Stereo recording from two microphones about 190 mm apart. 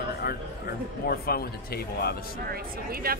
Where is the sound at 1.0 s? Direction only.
55° left (ahead or behind).